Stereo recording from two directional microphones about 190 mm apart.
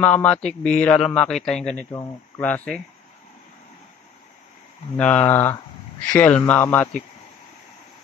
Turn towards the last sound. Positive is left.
turn(degrees=10)  # may be behind; listen again after turning